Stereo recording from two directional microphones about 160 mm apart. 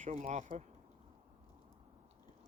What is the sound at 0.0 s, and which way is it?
Speech, 45° right (ahead or behind).